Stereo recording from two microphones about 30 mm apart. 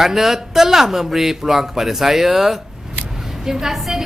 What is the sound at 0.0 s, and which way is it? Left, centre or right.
A woman's voice, centre.